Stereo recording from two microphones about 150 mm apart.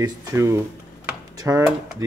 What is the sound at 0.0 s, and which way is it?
Speech, 20° right (ahead or behind).